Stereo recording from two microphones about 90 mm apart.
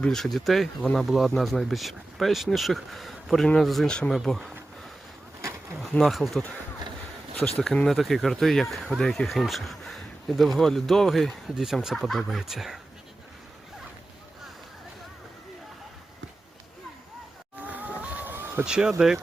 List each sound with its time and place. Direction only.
0.0 s speech: 5° left (ahead or behind)
6.0 s speech: centre (ahead or behind)
7.4 s speech: centre (ahead or behind)
17.6 s vehicle: 20° right (ahead or behind)
18.6 s speech: 10° right (ahead or behind)